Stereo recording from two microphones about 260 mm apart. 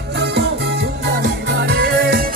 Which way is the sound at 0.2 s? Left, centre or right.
Right.